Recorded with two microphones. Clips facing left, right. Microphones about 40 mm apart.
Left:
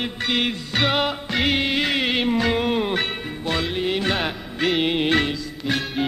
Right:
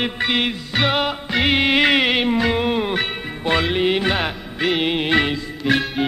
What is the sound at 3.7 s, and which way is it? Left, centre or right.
Music, right.